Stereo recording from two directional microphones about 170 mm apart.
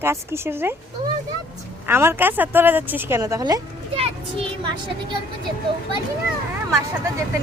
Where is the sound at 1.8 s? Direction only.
15° right (ahead or behind).